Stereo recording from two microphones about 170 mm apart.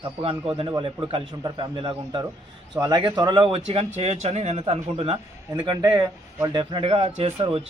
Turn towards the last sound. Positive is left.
turn(degrees=-35)  # may be behind; listen again after turning